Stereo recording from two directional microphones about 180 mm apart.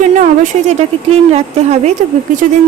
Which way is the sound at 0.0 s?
40° right (ahead or behind).